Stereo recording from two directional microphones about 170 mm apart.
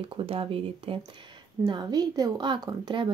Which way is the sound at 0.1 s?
30° right (ahead or behind).